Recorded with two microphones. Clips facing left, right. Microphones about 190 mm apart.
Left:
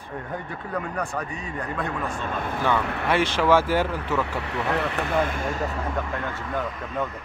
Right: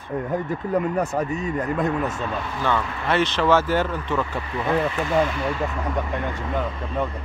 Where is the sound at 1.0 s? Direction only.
40° right (ahead or behind).